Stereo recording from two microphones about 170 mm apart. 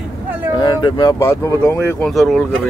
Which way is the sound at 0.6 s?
25° left (ahead or behind).